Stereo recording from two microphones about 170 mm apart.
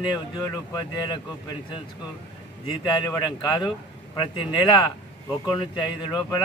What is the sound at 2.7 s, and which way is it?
A man's voice, 25° left (ahead or behind).